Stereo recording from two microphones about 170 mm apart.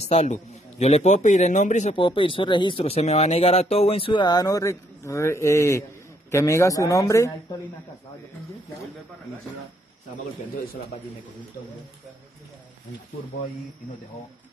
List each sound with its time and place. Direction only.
0.0 s a man's voice: 40° left (ahead or behind)
2.0 s speech: 30° left (ahead or behind)